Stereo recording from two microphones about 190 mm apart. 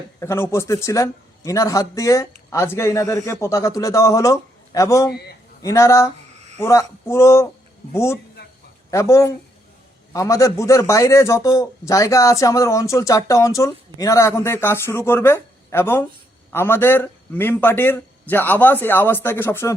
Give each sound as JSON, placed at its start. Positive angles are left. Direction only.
{"t": 0.2, "sound": "a man's voice", "side_deg": 15}